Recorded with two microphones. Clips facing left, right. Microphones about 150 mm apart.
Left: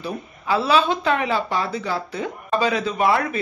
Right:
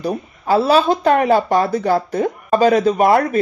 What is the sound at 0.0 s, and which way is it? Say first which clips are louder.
Speech: right 7 dB; 40° right (ahead or behind).